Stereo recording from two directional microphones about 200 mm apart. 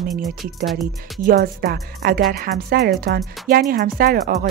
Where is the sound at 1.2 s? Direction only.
50° right (ahead or behind).